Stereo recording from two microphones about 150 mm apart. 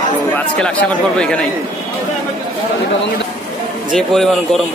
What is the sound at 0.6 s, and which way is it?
Speech, 5° left (ahead or behind).